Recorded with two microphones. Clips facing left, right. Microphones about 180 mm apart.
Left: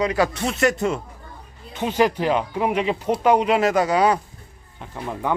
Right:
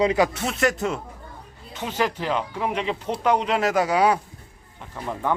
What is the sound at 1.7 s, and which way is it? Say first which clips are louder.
Speech: left 6 dB; 15° left (ahead or behind).